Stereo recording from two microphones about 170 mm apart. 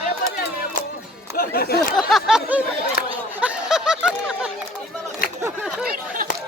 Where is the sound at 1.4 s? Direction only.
65° left (ahead or behind).